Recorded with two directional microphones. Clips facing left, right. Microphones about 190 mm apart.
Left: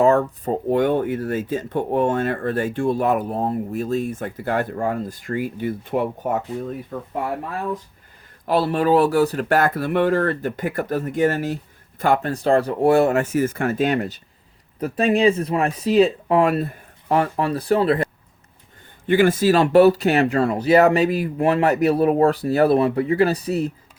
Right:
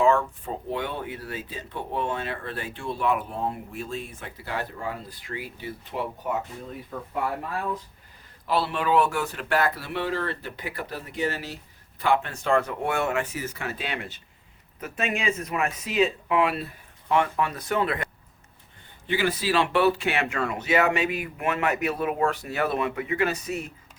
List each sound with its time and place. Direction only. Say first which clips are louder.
0.0 s speech: left 5 dB; 40° left (ahead or behind)
8.4 s speech: left 7 dB; 45° left (ahead or behind)
19.0 s speech: left 10 dB; 50° left (ahead or behind); by 23.7 s 35° left (ahead or behind)